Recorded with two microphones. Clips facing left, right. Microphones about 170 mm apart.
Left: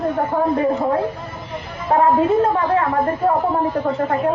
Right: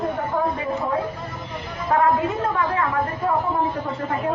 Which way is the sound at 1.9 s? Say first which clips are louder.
Left 5 dB; 30° left (ahead or behind).